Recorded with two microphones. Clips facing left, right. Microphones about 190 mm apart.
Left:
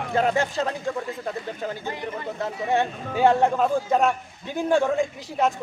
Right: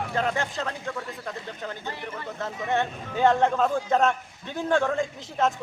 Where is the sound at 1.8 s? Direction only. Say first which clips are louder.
Left 4 dB; 15° left (ahead or behind).